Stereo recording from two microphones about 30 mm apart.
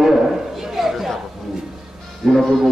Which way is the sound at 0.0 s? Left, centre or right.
Centre.